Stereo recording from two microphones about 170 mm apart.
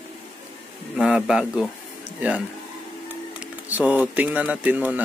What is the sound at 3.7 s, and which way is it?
Speech, 10° right (ahead or behind).